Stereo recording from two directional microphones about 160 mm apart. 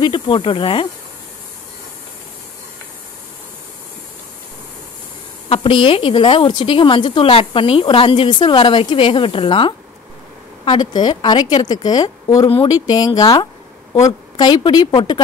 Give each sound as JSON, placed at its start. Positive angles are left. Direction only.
{"t": 0.0, "sound": "a woman's voice", "side_deg": 30}
{"t": 5.5, "sound": "a woman's voice", "side_deg": 35}